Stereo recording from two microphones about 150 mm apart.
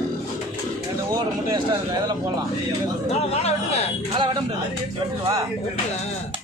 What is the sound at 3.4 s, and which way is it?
Speech, 45° left (ahead or behind).